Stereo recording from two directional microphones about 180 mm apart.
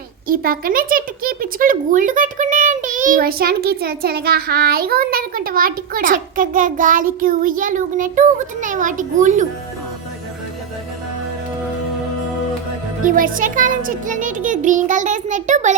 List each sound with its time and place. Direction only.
0.3 s speech: 55° right (ahead or behind)
13.1 s speech: 50° right (ahead or behind)